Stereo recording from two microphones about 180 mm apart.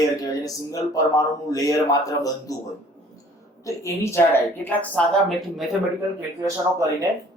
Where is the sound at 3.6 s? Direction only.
15° left (ahead or behind).